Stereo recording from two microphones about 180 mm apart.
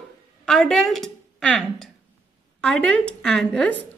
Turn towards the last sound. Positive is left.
turn(degrees=5)  # may be behind; listen again after turning